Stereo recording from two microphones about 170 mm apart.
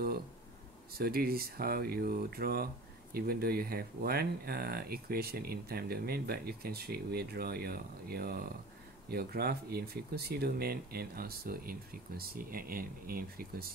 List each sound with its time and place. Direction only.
0.9 s speech: 65° right (ahead or behind)